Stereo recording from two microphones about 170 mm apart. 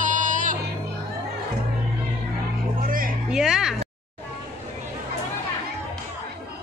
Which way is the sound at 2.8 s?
55° right (ahead or behind).